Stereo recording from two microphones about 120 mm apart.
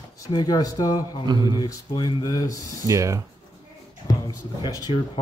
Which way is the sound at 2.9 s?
25° right (ahead or behind).